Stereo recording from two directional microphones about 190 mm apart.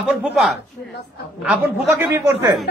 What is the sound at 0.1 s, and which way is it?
A woman's voice, centre (ahead or behind).